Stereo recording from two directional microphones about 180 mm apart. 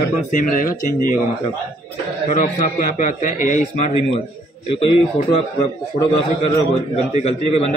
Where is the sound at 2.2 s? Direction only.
45° left (ahead or behind).